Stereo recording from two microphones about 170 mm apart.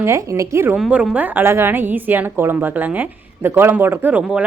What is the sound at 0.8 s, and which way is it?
A woman's voice, 5° right (ahead or behind).